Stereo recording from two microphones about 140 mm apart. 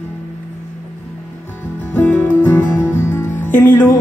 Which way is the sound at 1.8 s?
10° left (ahead or behind).